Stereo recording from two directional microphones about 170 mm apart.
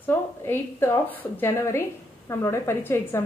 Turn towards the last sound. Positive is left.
turn(degrees=15)  # may be behind; listen again after turning